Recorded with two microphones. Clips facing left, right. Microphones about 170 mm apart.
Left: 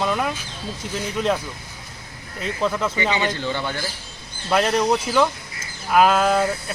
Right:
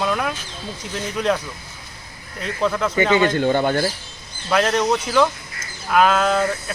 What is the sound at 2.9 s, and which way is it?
Speech, 50° right (ahead or behind).